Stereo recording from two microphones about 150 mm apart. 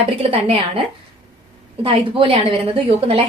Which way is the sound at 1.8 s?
35° right (ahead or behind).